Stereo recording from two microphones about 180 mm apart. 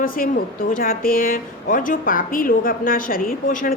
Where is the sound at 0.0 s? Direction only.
50° left (ahead or behind).